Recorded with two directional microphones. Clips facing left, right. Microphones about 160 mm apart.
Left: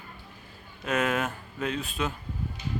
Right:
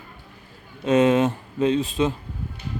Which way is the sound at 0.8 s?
25° right (ahead or behind).